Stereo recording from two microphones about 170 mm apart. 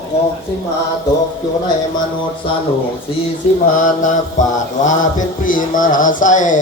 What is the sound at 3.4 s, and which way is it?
A man's voice, 40° left (ahead or behind).